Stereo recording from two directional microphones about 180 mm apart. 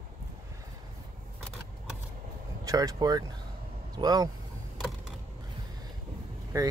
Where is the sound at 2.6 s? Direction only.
20° right (ahead or behind).